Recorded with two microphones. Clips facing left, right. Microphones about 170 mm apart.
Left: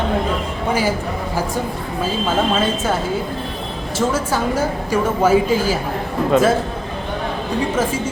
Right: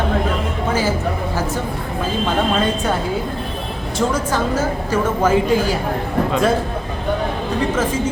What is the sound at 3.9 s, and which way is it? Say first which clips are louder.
A woman's voice: even; 10° left (ahead or behind).